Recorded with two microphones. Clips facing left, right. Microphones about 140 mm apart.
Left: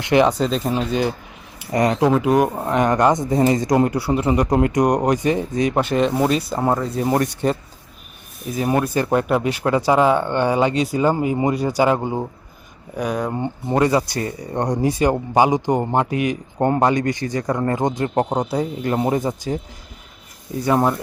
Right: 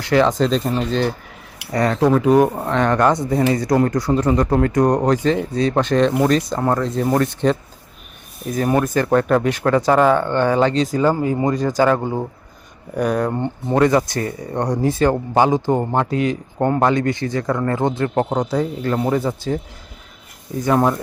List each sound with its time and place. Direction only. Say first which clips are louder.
0.0 s a man's voice: even; 20° left (ahead or behind)
2.0 s a man's voice: right 6 dB; 5° left (ahead or behind)
8.5 s a man's voice: right 2 dB; 10° left (ahead or behind)
13.0 s a man's voice: right 3 dB; centre (ahead or behind); by 19.5 s 20° left (ahead or behind)
20.7 s a man's voice: right 1 dB; 15° left (ahead or behind)